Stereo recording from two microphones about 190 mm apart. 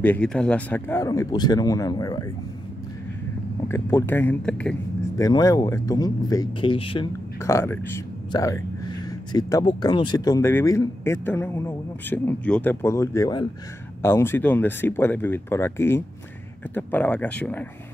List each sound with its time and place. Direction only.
0.0 s speech: 5° left (ahead or behind)
3.6 s speech: 10° left (ahead or behind)
5.1 s speech: 20° left (ahead or behind)
7.3 s speech: 15° left (ahead or behind)